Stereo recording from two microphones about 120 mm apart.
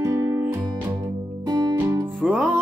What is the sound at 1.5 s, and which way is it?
Music, 30° right (ahead or behind).